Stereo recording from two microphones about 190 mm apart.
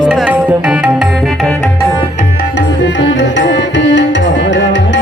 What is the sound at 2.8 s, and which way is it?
Tabla, 70° left (ahead or behind).